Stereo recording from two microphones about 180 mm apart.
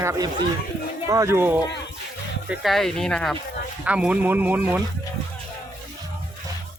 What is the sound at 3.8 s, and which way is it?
Speech, 5° right (ahead or behind).